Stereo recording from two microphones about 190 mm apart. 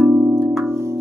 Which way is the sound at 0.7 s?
15° right (ahead or behind).